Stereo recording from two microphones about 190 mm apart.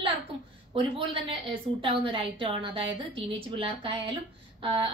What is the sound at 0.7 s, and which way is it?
A woman's voice, 30° right (ahead or behind).